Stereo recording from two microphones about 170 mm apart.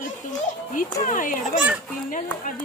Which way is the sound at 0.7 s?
50° left (ahead or behind).